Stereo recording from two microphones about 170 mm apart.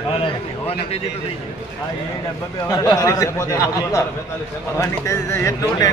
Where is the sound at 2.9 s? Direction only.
20° left (ahead or behind).